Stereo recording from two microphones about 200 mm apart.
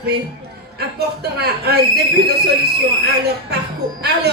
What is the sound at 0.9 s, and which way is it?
Speech, 55° right (ahead or behind).